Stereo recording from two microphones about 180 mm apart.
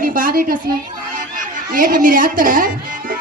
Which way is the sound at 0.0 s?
50° right (ahead or behind).